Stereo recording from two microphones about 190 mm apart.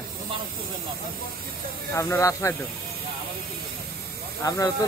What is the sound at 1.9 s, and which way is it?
Speech, 15° left (ahead or behind).